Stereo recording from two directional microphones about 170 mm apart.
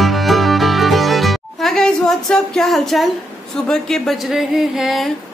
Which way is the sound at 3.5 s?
5° left (ahead or behind).